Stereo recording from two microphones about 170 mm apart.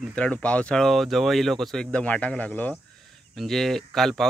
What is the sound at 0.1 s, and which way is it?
Speech, 5° left (ahead or behind).